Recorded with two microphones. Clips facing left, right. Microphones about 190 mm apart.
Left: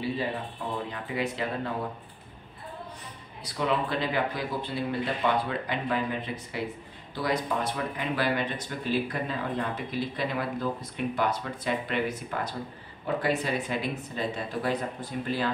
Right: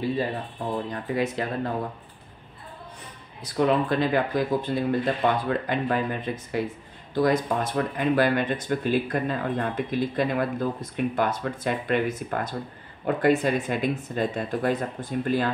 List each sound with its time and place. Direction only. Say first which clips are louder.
1.1 s speech: right 4 dB; 45° right (ahead or behind)
3.5 s speech: right 6 dB; 45° right (ahead or behind)